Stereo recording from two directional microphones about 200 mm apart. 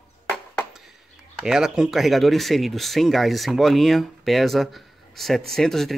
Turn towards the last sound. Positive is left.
turn(degrees=0)  # may be behind; listen again after turning